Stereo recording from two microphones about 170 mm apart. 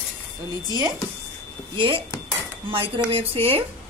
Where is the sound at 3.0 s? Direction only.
35° right (ahead or behind).